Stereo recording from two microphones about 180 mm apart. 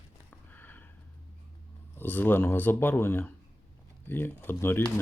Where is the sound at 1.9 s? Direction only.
10° left (ahead or behind).